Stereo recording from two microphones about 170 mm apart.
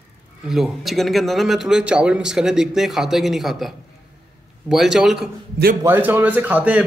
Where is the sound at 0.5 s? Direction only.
Centre (ahead or behind).